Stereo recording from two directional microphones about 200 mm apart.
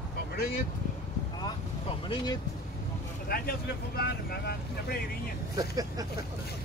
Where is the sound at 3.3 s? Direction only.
50° left (ahead or behind).